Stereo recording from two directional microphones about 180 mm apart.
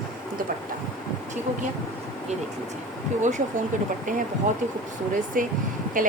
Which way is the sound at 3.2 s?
40° right (ahead or behind).